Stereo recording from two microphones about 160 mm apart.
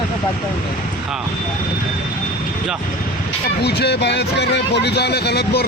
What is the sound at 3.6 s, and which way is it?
Speech, 90° left.